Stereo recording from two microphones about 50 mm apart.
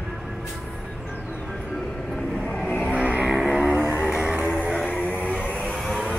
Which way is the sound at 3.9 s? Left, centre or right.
Left.